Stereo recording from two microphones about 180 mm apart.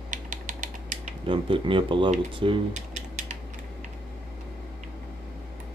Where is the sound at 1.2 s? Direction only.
30° right (ahead or behind).